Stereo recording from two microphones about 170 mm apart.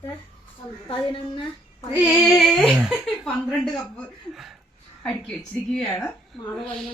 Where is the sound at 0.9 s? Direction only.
30° left (ahead or behind).